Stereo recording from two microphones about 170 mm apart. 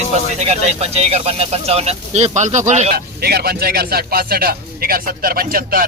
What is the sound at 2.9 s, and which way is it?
Speech, 70° right (ahead or behind).